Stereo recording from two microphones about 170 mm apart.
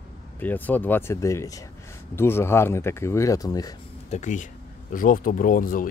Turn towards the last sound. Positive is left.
turn(degrees=55)  # may be behind; listen again after turning